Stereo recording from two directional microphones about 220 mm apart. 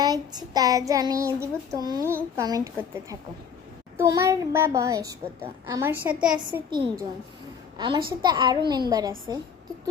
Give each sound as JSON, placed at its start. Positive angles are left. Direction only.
{"t": 0.0, "sound": "child singing", "side_deg": -15}
{"t": 6.7, "sound": "a woman's voice", "side_deg": -20}